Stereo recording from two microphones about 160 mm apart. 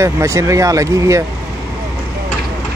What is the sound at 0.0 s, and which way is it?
Speech, 20° right (ahead or behind).